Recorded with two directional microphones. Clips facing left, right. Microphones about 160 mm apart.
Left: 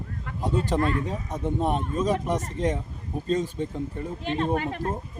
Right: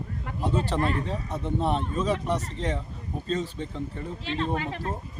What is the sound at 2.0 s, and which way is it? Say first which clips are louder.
Speech: left 2 dB; 45° left (ahead or behind).